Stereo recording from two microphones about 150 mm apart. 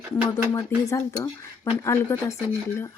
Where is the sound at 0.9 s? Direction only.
20° left (ahead or behind).